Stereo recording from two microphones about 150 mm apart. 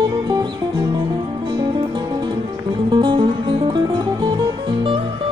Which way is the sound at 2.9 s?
30° right (ahead or behind).